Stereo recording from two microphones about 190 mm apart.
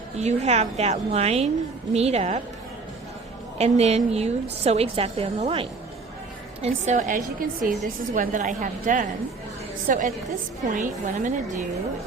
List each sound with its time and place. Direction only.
0.2 s a woman's voice: 35° right (ahead or behind)
3.6 s a woman's voice: 35° right (ahead or behind)